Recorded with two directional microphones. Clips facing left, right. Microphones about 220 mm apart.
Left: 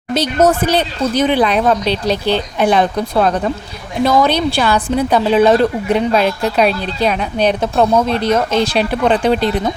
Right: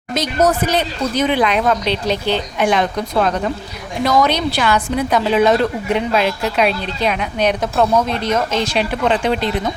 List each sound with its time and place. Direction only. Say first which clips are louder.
0.1 s a woman's voice: left 3 dB; 30° left (ahead or behind)